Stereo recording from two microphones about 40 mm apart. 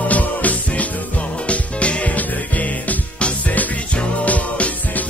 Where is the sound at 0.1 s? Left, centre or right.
Left.